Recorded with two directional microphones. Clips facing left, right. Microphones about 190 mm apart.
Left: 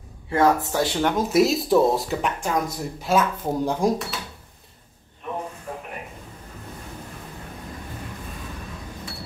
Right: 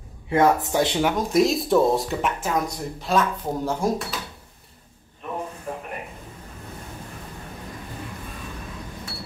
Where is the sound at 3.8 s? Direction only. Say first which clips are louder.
Left 2 dB; 15° left (ahead or behind).